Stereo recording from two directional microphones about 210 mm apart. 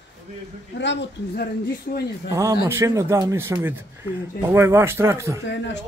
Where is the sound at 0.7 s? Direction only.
50° left (ahead or behind).